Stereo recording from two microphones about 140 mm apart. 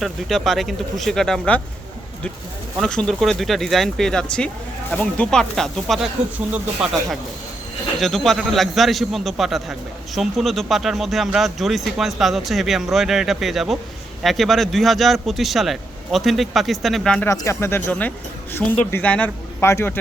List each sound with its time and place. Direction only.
0.0 s speech: centre (ahead or behind)
2.8 s speech: 5° left (ahead or behind)
6.3 s speech: 10° right (ahead or behind)
8.0 s speech: centre (ahead or behind)
17.2 s speech: 20° left (ahead or behind)